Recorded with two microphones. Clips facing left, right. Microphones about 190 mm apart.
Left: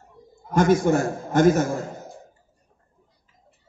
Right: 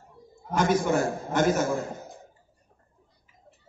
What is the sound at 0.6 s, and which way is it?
A man's voice, 45° left (ahead or behind).